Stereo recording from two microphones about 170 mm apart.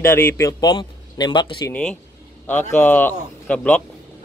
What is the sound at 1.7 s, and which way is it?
A man's voice, 5° left (ahead or behind).